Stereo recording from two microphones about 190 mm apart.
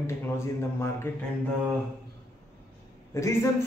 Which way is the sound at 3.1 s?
15° left (ahead or behind).